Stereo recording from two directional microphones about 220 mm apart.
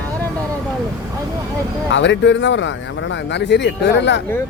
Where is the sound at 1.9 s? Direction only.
55° left (ahead or behind).